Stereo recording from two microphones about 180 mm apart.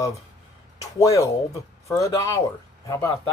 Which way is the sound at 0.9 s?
20° left (ahead or behind).